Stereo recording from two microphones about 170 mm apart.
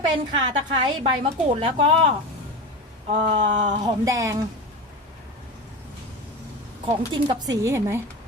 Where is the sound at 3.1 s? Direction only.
45° right (ahead or behind).